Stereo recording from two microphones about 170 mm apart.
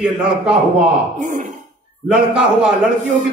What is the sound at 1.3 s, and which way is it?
Speech, 45° right (ahead or behind).